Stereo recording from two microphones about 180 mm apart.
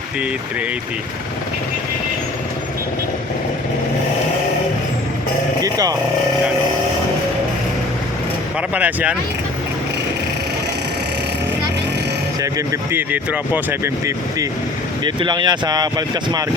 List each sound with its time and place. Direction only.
5.6 s speech: 20° right (ahead or behind)
8.7 s speech: 10° right (ahead or behind)
12.4 s speech: 20° right (ahead or behind)